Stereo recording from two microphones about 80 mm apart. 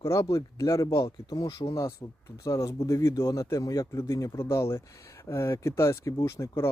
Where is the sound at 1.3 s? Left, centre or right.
Left.